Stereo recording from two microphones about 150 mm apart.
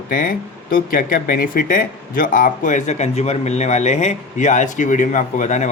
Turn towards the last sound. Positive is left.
turn(degrees=55)  # may be behind; listen again after turning